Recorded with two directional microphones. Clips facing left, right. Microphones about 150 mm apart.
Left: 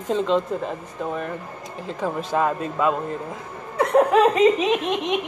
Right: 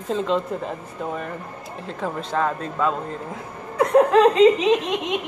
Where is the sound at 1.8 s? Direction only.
Centre (ahead or behind).